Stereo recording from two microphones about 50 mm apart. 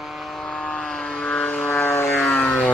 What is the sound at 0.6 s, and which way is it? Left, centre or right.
Vehicle, left.